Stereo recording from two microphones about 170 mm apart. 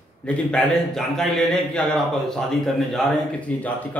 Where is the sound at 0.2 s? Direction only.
5° left (ahead or behind).